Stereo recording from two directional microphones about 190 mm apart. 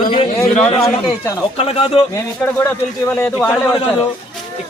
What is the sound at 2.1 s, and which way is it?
A man's voice, 15° left (ahead or behind).